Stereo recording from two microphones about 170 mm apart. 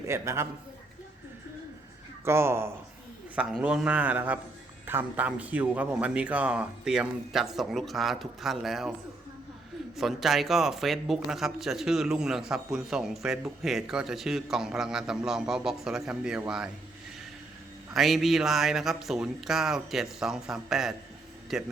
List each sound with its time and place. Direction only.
0.1 s a man's voice: 15° right (ahead or behind)
2.2 s a man's voice: 15° right (ahead or behind)
10.0 s speech: centre (ahead or behind)
17.9 s speech: centre (ahead or behind)